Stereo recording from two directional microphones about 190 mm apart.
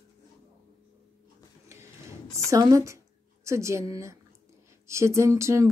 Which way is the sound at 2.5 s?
15° right (ahead or behind).